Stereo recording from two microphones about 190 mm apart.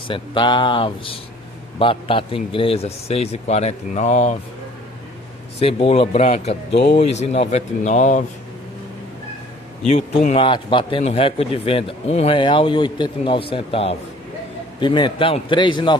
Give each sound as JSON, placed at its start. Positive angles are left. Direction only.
{"t": 0.1, "sound": "a man's voice", "side_deg": 25}
{"t": 5.6, "sound": "speech", "side_deg": 30}
{"t": 6.7, "sound": "speech", "side_deg": 60}
{"t": 7.0, "sound": "speech", "side_deg": 35}
{"t": 9.8, "sound": "a man's voice", "side_deg": 35}